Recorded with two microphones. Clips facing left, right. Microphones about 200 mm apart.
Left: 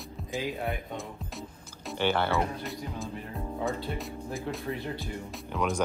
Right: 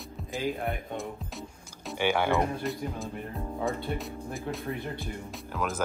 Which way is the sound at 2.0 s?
10° right (ahead or behind).